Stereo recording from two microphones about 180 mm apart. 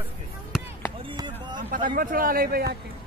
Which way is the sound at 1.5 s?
50° right (ahead or behind).